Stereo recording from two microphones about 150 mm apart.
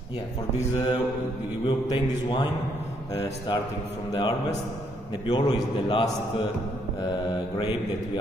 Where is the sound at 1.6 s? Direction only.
30° left (ahead or behind).